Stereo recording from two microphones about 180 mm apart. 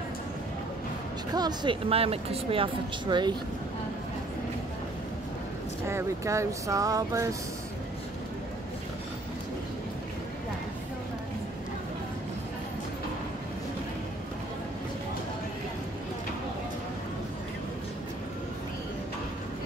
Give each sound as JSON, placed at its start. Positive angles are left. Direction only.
{"t": 1.3, "sound": "speech", "side_deg": -25}
{"t": 5.9, "sound": "speech", "side_deg": -15}